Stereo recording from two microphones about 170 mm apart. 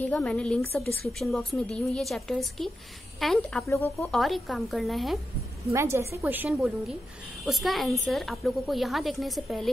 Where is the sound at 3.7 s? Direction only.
15° left (ahead or behind).